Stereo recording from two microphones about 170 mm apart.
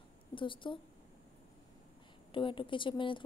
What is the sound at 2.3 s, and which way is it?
Speech, 30° left (ahead or behind).